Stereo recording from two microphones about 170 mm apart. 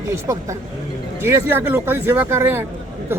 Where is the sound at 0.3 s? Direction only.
15° right (ahead or behind).